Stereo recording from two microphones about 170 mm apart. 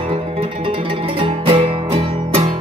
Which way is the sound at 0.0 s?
35° right (ahead or behind).